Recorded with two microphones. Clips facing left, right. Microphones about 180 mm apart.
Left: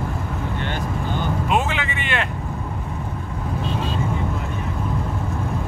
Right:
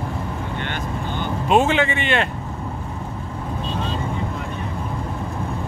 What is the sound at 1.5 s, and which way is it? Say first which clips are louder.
Speech: right 9 dB; 30° right (ahead or behind).